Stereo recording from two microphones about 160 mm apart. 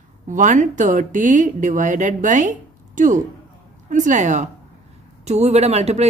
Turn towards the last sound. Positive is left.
turn(degrees=-40)  # may be behind; listen again after turning